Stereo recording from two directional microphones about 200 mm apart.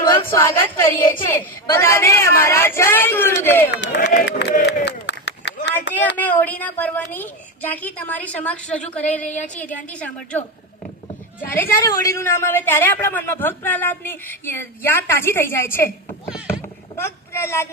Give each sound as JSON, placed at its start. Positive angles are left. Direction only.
{"t": 0.1, "sound": "a woman's voice", "side_deg": 15}
{"t": 3.7, "sound": "speech", "side_deg": 60}
{"t": 4.6, "sound": "a sound", "side_deg": 60}
{"t": 6.1, "sound": "a woman's voice", "side_deg": 10}
{"t": 17.0, "sound": "speech", "side_deg": 10}